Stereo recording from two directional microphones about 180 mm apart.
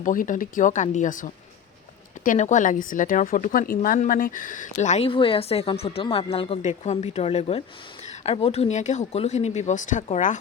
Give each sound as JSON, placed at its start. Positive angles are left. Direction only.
{"t": 0.0, "sound": "speech", "side_deg": 45}